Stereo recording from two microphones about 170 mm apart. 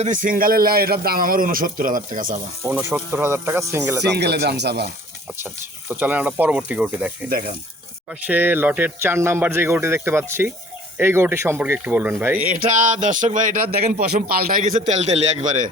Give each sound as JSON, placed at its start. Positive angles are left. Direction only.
{"t": 0.0, "sound": "a man's voice", "side_deg": -50}
{"t": 2.6, "sound": "speech", "side_deg": -10}
{"t": 4.0, "sound": "speech", "side_deg": -80}
{"t": 6.0, "sound": "speech", "side_deg": -10}
{"t": 7.3, "sound": "a man's voice", "side_deg": -60}
{"t": 8.2, "sound": "speech", "side_deg": -10}
{"t": 12.4, "sound": "speech", "side_deg": -55}